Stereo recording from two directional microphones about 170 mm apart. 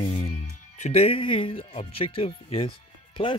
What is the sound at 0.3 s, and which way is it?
Speech, 40° left (ahead or behind).